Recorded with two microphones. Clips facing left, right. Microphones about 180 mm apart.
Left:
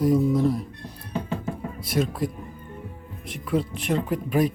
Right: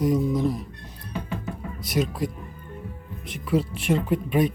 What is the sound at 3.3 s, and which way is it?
Speech, centre (ahead or behind).